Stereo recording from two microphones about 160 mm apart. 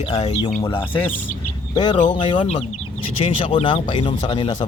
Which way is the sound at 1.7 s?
25° left (ahead or behind).